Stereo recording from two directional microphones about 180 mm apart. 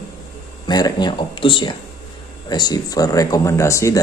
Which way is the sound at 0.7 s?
25° left (ahead or behind).